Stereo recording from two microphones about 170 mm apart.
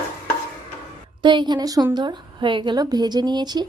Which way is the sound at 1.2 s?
25° right (ahead or behind).